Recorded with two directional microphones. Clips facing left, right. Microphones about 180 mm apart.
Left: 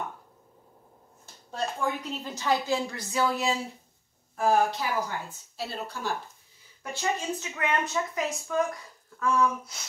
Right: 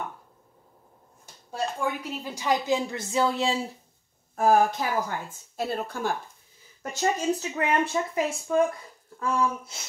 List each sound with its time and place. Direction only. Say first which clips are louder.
1.5 s a woman's voice: right 1 dB; 10° right (ahead or behind); by 3.5 s 25° right (ahead or behind)
4.4 s a woman's voice: right 3 dB; 45° right (ahead or behind); by 9.8 s 25° right (ahead or behind)